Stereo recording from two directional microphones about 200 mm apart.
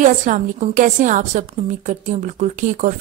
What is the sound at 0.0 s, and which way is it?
Speech, 40° right (ahead or behind).